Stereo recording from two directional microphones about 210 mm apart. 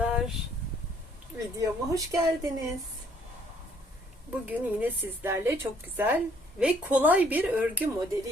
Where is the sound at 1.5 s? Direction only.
15° right (ahead or behind).